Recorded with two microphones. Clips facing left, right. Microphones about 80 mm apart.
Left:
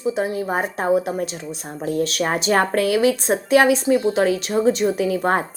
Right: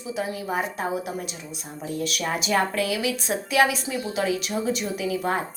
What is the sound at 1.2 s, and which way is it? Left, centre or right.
A woman's voice, left.